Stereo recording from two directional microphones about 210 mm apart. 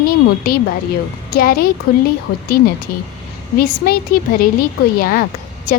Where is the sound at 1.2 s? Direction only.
45° left (ahead or behind).